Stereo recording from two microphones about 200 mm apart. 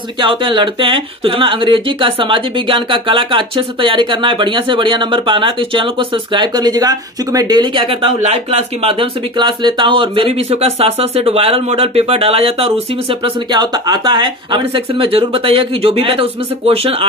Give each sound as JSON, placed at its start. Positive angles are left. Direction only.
{"t": 0.2, "sound": "speech", "side_deg": -25}